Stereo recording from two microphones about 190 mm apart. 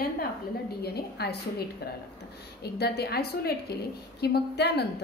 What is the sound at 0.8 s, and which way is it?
A woman's voice, 60° left (ahead or behind).